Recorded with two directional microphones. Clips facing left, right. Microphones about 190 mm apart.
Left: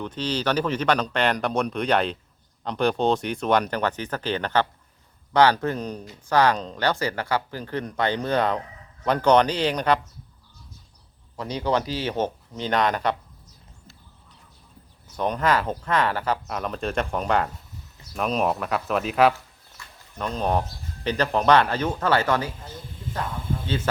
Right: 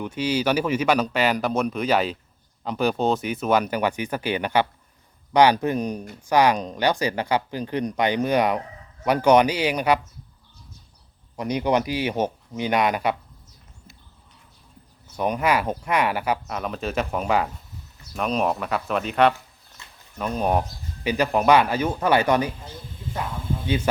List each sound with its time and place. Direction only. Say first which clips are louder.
0.0 s speech: right 3 dB; 10° right (ahead or behind)
11.3 s speech: right 3 dB; 15° right (ahead or behind)
15.1 s speech: right 1 dB; 10° right (ahead or behind)
19.8 s a sound: left 2 dB; 20° right (ahead or behind)
20.1 s speech: right 2 dB; 10° right (ahead or behind)